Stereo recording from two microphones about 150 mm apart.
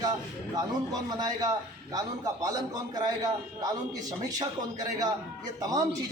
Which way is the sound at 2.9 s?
25° right (ahead or behind).